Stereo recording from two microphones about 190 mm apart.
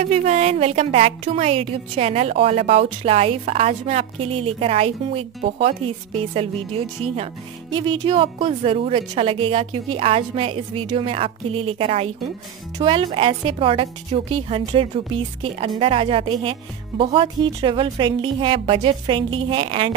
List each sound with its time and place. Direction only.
0.0 s a woman's voice: 35° right (ahead or behind)
7.7 s a woman's voice: 25° right (ahead or behind)